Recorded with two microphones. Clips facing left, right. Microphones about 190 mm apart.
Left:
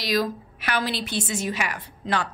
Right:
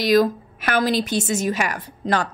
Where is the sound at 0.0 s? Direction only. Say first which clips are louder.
Right 8 dB; 50° right (ahead or behind).